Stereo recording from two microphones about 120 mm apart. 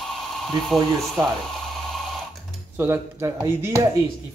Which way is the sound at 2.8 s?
20° right (ahead or behind).